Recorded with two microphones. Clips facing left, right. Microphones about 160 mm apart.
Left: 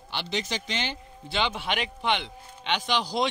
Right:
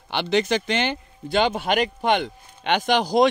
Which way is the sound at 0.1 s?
60° right (ahead or behind).